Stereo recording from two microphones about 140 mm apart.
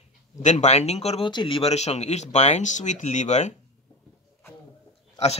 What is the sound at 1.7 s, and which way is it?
Speech, 50° left (ahead or behind).